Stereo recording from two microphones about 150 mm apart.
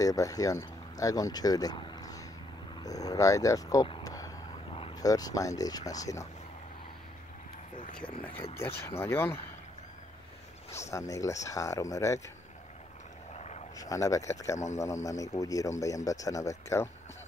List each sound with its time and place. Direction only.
0.0 s speech: 20° left (ahead or behind)
2.7 s a sound: 25° left (ahead or behind)
5.0 s a man's voice: 25° left (ahead or behind)
8.3 s speech: 40° left (ahead or behind)
8.5 s speech: 15° left (ahead or behind)
10.9 s a man's voice: 20° left (ahead or behind)
13.4 s vehicle: 50° left (ahead or behind)
13.7 s a man's voice: 25° left (ahead or behind)